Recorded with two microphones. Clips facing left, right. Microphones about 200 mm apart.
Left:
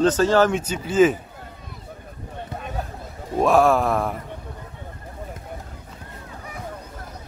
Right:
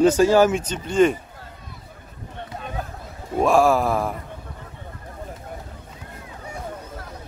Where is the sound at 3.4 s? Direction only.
Centre (ahead or behind).